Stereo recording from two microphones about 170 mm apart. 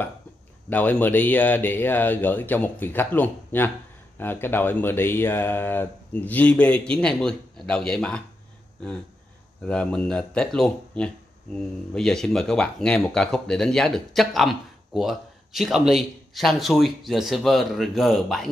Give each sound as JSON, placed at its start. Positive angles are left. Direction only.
{"t": 0.7, "sound": "speech", "side_deg": 10}
{"t": 9.7, "sound": "speech", "side_deg": 5}